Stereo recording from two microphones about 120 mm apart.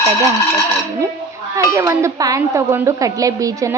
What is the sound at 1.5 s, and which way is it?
A child's voice, 25° right (ahead or behind).